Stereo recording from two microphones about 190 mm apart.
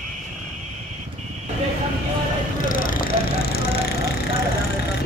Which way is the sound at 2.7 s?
45° left (ahead or behind).